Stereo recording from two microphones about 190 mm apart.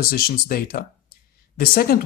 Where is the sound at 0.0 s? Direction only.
50° left (ahead or behind).